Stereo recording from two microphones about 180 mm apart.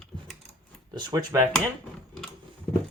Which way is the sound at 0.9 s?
20° right (ahead or behind).